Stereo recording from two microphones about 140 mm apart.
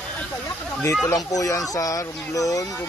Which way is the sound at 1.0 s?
25° left (ahead or behind).